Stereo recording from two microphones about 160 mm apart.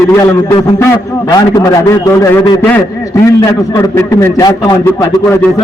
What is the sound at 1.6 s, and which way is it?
A man's voice, 20° left (ahead or behind).